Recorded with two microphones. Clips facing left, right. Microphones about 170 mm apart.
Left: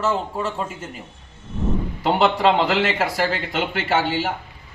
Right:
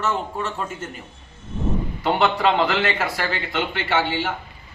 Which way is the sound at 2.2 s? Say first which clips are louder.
Left 2 dB; 30° left (ahead or behind).